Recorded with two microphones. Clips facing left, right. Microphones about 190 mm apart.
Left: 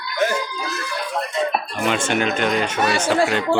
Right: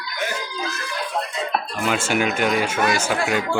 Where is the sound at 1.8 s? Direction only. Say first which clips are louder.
Left 1 dB; 5° right (ahead or behind).